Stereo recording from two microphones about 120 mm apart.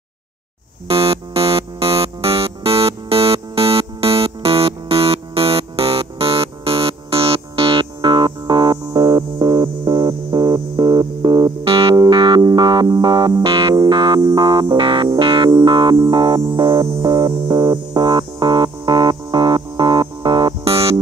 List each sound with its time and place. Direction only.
0.8 s music: 50° right (ahead or behind)
20.6 s music: 55° right (ahead or behind)